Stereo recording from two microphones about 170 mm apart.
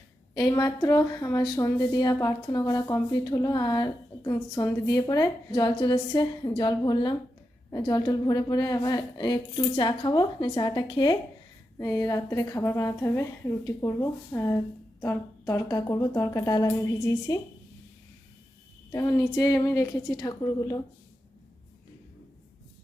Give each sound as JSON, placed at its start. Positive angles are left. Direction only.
{"t": 0.3, "sound": "a woman's voice", "side_deg": 20}
{"t": 18.9, "sound": "a woman's voice", "side_deg": 20}